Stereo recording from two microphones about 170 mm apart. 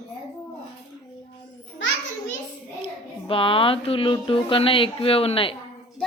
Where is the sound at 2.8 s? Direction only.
30° left (ahead or behind).